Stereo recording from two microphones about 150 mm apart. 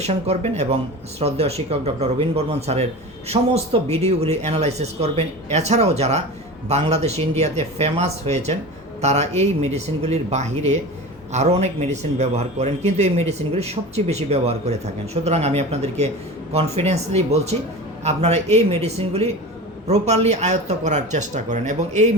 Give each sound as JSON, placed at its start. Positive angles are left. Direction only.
{"t": 0.0, "sound": "a man's voice", "side_deg": -45}